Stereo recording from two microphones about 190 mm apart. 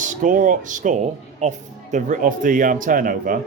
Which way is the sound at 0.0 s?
40° right (ahead or behind).